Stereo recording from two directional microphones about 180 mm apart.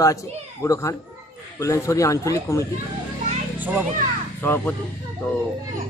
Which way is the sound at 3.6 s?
10° right (ahead or behind).